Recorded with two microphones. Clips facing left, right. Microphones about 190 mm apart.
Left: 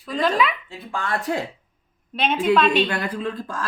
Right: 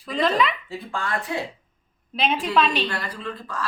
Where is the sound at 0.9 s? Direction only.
20° left (ahead or behind).